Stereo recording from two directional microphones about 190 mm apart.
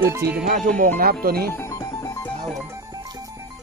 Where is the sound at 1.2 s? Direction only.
50° right (ahead or behind).